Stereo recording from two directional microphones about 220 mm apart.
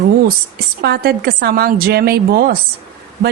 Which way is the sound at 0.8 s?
45° right (ahead or behind).